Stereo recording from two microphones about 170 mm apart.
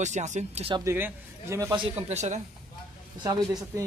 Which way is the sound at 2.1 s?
40° right (ahead or behind).